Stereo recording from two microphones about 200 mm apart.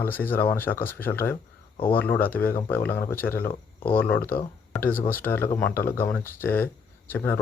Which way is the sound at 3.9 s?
10° left (ahead or behind).